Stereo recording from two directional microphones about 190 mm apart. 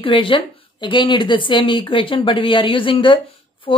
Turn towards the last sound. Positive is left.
turn(degrees=25)  # may be behind; listen again after turning